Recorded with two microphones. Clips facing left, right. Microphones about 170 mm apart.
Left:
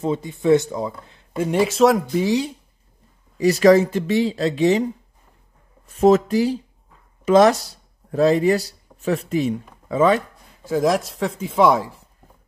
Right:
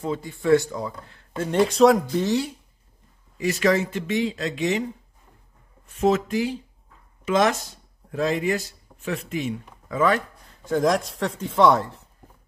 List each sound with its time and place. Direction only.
0.0 s speech: 20° left (ahead or behind); by 2.3 s 5° left (ahead or behind)
3.3 s speech: 35° left (ahead or behind)
5.9 s speech: 40° left (ahead or behind); by 10.2 s 25° left (ahead or behind)
10.6 s speech: 5° left (ahead or behind)